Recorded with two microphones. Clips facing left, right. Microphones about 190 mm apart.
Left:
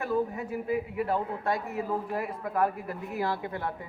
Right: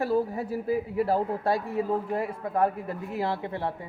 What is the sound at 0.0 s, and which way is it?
A woman's voice, 35° right (ahead or behind).